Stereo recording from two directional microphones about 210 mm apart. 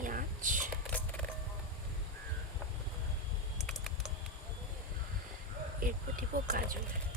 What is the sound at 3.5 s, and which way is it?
Typing, centre (ahead or behind).